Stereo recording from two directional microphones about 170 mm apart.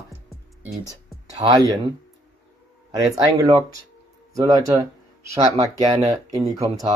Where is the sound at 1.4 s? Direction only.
25° right (ahead or behind).